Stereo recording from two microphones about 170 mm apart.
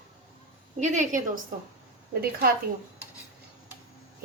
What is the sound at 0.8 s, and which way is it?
Dishes, 45° right (ahead or behind).